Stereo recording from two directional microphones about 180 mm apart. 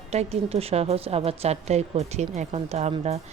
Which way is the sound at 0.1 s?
35° right (ahead or behind).